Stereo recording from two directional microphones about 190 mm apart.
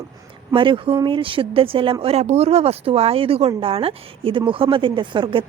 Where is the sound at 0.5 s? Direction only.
25° right (ahead or behind).